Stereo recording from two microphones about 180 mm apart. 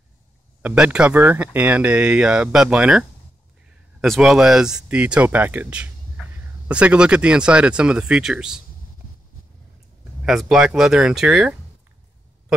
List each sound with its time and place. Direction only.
0.6 s speech: 10° right (ahead or behind)
10.2 s speech: centre (ahead or behind)